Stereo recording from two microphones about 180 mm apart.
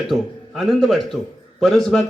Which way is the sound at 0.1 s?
Centre (ahead or behind).